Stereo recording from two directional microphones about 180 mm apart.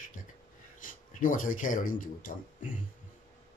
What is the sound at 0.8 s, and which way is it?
Speech, 50° left (ahead or behind).